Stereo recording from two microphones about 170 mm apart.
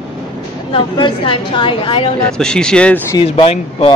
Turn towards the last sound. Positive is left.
turn(degrees=35)  # may be behind; listen again after turning